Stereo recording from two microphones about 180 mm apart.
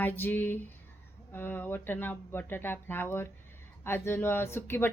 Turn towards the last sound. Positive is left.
turn(degrees=15)  # may be behind; listen again after turning